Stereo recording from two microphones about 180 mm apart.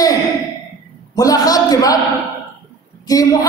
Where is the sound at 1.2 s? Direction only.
20° left (ahead or behind).